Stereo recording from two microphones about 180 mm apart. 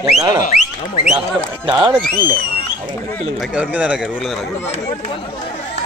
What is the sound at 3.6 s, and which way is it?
Speech, 5° right (ahead or behind).